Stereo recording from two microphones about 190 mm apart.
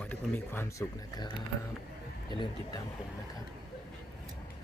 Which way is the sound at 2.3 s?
25° left (ahead or behind).